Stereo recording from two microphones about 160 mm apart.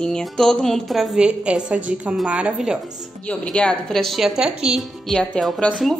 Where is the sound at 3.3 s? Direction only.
5° left (ahead or behind).